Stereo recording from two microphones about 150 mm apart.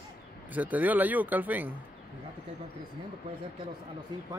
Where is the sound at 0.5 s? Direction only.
10° right (ahead or behind).